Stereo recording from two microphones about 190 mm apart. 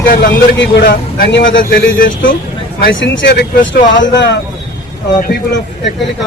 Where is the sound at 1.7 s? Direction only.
45° left (ahead or behind).